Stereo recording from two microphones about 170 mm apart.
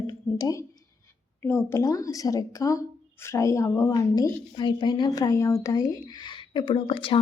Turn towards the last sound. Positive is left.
turn(degrees=30)  # may be behind; listen again after turning